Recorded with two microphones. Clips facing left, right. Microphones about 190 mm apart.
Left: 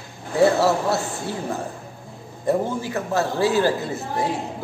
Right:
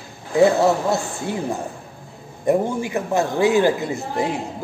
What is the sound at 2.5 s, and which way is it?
A man's voice, 15° right (ahead or behind).